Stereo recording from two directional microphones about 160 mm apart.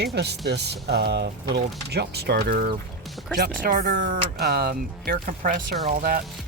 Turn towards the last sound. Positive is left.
turn(degrees=-65)  # may be behind; listen again after turning